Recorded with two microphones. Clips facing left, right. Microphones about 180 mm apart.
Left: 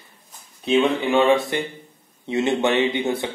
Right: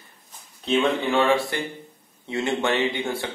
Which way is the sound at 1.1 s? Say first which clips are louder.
Left 3 dB; 20° left (ahead or behind).